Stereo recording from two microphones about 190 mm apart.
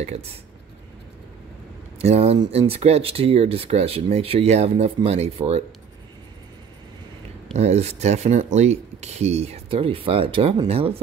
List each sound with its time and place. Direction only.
2.0 s speech: 35° right (ahead or behind)
2.3 s speech: 20° right (ahead or behind)
7.5 s speech: 35° right (ahead or behind)